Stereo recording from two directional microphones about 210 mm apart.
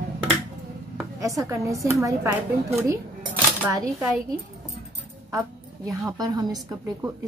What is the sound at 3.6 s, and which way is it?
Speech, 5° right (ahead or behind).